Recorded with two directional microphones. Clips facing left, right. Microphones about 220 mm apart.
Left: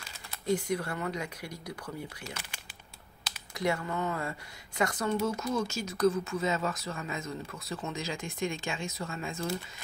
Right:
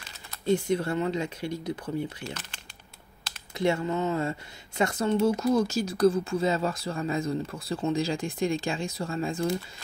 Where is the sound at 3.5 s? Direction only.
25° right (ahead or behind).